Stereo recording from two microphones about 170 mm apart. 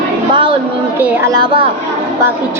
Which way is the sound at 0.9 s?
10° right (ahead or behind).